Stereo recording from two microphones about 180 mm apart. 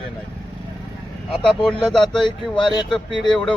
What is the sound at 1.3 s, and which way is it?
Speech, 5° left (ahead or behind).